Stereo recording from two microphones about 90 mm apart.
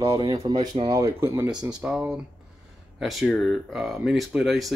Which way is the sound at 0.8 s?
35° right (ahead or behind).